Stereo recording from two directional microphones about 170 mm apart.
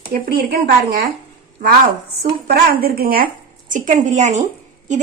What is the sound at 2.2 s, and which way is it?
A woman's voice, 65° right (ahead or behind).